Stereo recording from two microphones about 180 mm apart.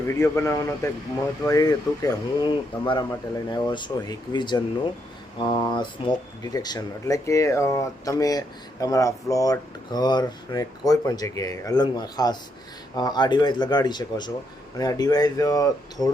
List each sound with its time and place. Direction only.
0.2 s speech: 15° left (ahead or behind)